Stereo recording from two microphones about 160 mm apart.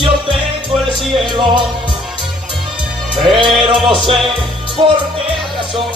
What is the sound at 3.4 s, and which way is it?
Music, 30° right (ahead or behind).